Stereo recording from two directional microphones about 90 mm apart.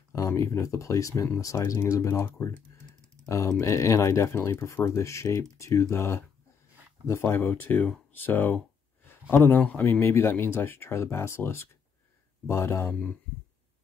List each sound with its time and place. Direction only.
0.1 s speech: 35° left (ahead or behind)